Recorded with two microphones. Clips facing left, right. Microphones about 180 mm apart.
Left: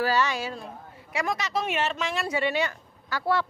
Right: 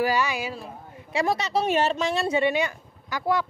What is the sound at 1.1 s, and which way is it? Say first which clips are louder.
Speech: right 4 dB; 30° right (ahead or behind).